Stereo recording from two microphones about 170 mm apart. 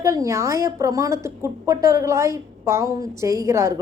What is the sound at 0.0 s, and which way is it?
A woman's voice, 15° right (ahead or behind).